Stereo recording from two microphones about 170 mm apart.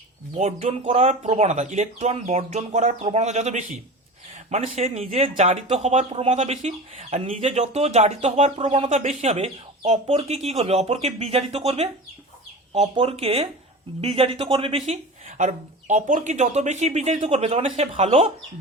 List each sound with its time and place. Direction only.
0.3 s speech: 40° right (ahead or behind)